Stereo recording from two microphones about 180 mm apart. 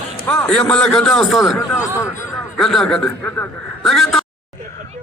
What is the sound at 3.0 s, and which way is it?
Speech, 15° left (ahead or behind).